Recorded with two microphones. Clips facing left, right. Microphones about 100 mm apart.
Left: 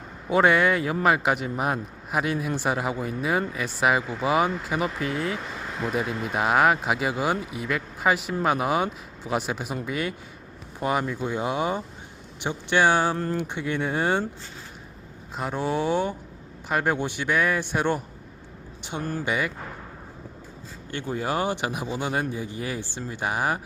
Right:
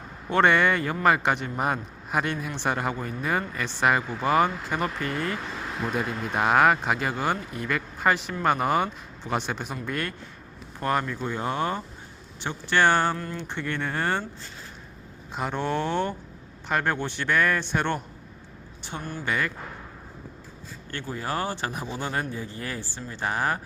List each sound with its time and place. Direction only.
0.3 s speech: 5° left (ahead or behind)
15.4 s speech: 5° left (ahead or behind)
18.8 s a sound: 15° left (ahead or behind)
19.2 s speech: 15° left (ahead or behind)
20.9 s speech: 20° left (ahead or behind)